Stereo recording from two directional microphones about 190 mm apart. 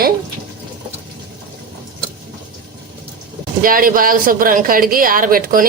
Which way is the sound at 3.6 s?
45° right (ahead or behind).